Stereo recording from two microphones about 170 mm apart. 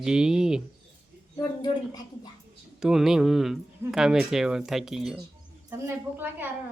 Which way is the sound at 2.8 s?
5° right (ahead or behind).